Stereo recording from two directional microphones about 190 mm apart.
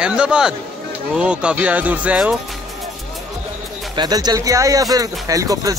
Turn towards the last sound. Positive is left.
turn(degrees=-20)  # may be behind; listen again after turning